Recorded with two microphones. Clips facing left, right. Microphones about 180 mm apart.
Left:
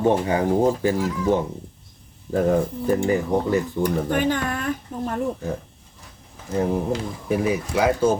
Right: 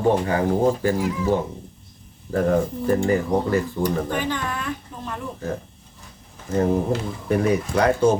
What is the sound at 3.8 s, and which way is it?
Speech, 50° left (ahead or behind).